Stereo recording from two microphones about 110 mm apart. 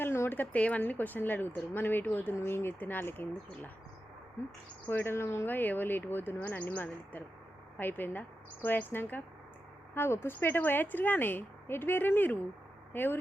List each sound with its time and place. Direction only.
0.0 s a woman's voice: 20° left (ahead or behind)
4.9 s a woman's voice: 20° left (ahead or behind)